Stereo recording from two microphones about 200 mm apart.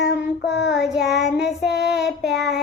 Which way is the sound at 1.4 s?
60° left (ahead or behind).